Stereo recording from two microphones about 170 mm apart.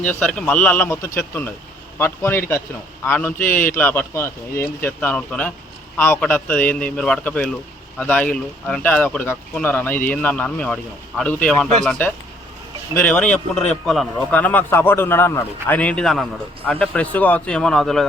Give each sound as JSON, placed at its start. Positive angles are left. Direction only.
{"t": 0.0, "sound": "a man's voice", "side_deg": 10}